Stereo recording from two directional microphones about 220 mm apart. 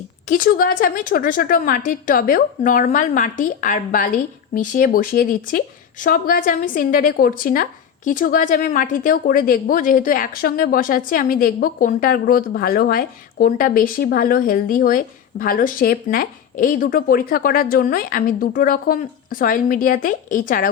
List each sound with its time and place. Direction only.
0.3 s speech: 40° left (ahead or behind)